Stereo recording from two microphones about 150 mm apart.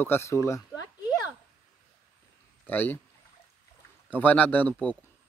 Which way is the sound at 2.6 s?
10° left (ahead or behind).